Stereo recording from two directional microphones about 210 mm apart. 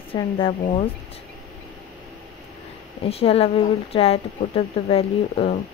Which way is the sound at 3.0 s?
30° left (ahead or behind).